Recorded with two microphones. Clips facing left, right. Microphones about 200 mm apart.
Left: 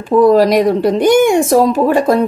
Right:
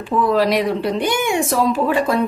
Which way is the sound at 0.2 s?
40° left (ahead or behind).